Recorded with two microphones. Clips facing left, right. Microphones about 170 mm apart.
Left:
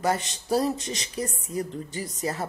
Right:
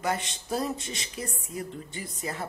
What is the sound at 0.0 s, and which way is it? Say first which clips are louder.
A man's voice: left 4 dB; 40° left (ahead or behind).